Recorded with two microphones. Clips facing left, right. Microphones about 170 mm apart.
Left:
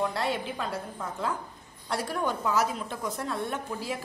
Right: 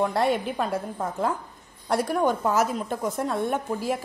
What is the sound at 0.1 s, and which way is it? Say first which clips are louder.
A woman's voice: right 7 dB; 50° right (ahead or behind).